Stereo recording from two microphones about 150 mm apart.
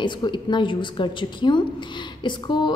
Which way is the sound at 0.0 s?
30° left (ahead or behind).